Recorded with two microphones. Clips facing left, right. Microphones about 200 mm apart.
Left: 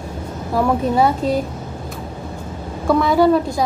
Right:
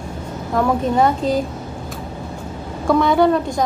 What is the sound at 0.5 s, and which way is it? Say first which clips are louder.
Speech: even; 5° left (ahead or behind).